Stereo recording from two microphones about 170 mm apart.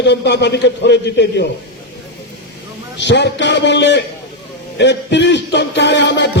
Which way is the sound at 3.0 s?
90° left.